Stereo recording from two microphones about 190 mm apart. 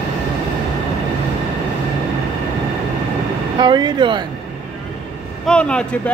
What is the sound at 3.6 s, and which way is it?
Speech, 25° right (ahead or behind).